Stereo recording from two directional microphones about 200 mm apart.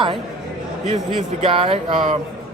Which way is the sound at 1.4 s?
30° right (ahead or behind).